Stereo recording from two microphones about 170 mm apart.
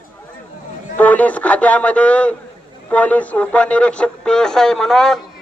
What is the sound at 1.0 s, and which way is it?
A man's voice, 10° left (ahead or behind).